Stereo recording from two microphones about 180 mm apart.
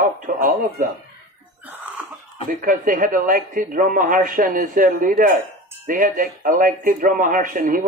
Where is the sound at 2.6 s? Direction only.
50° right (ahead or behind).